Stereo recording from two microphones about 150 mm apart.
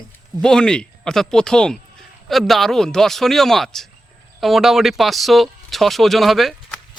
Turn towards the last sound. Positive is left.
turn(degrees=0)  # may be behind; listen again after turning